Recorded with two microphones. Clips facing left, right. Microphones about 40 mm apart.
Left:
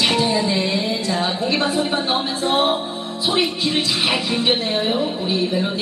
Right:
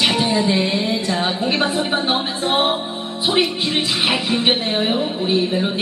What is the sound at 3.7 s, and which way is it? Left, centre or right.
Speech, right.